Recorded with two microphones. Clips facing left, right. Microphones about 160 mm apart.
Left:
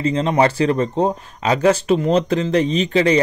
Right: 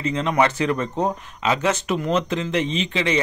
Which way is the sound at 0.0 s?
35° left (ahead or behind).